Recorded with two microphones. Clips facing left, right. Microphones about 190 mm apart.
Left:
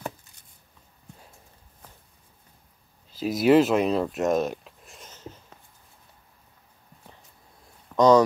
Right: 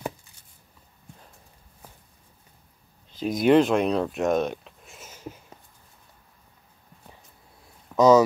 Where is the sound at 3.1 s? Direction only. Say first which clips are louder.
Even; 5° left (ahead or behind).